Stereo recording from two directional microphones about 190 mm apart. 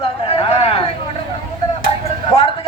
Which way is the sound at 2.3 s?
30° left (ahead or behind).